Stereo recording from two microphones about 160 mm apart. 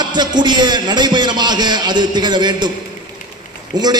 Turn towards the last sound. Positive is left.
turn(degrees=-25)  # may be behind; listen again after turning